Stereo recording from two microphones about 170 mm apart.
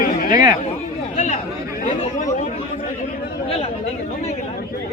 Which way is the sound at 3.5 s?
35° left (ahead or behind).